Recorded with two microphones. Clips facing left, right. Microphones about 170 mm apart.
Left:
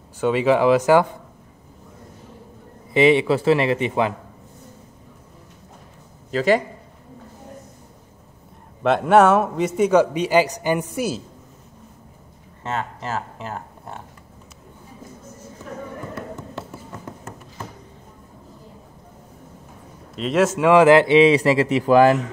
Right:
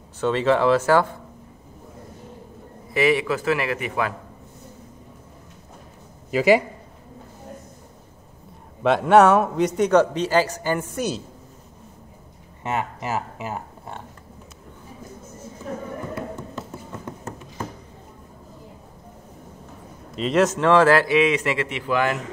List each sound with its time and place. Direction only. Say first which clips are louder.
0.2 s speech: left 2 dB; 10° left (ahead or behind)
2.9 s speech: left 5 dB; 25° left (ahead or behind)
6.3 s speech: right 1 dB; 10° right (ahead or behind)
8.8 s a man's voice: even; centre (ahead or behind)
12.6 s speech: right 1 dB; 10° right (ahead or behind)
20.2 s speech: left 1 dB; 5° left (ahead or behind); by 22.1 s 35° left (ahead or behind)